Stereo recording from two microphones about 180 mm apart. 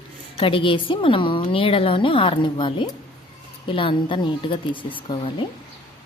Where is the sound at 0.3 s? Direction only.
30° left (ahead or behind).